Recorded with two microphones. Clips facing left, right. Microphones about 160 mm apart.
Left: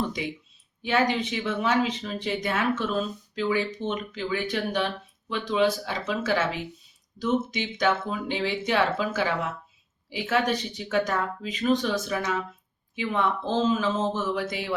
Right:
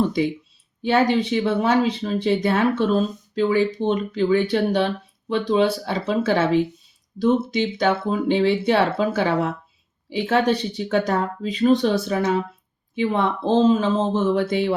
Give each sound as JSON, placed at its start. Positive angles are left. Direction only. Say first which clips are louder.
{"t": 0.8, "sound": "speech", "louder": "right 6 dB", "side_deg": -35}